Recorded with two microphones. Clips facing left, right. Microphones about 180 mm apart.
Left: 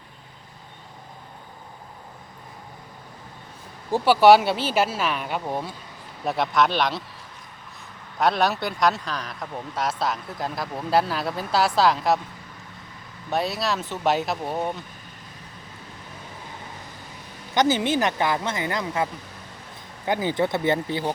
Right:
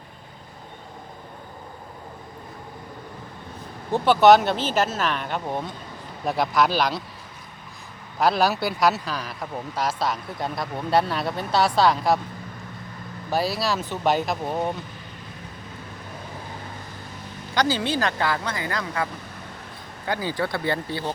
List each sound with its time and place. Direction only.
3.9 s speech: 10° left (ahead or behind)
8.2 s speech: centre (ahead or behind)
13.3 s speech: centre (ahead or behind)
17.5 s speech: 20° left (ahead or behind)
20.1 s speech: 20° left (ahead or behind)